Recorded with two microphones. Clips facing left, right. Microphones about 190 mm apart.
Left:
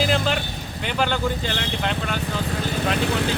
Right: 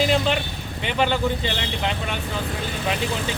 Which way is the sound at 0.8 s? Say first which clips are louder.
Right 2 dB; centre (ahead or behind).